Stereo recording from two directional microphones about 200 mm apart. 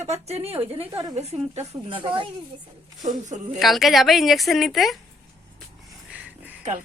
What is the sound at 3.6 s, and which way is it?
A woman's voice, centre (ahead or behind).